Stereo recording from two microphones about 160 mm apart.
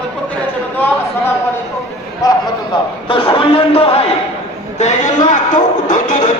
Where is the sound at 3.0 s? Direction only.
35° left (ahead or behind); by 6.3 s 50° left (ahead or behind).